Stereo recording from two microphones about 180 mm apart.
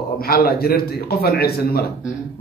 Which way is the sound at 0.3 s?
55° left (ahead or behind).